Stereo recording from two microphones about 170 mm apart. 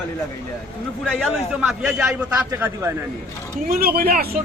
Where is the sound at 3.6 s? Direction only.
60° right (ahead or behind).